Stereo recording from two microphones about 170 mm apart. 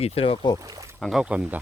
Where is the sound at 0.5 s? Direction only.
20° right (ahead or behind).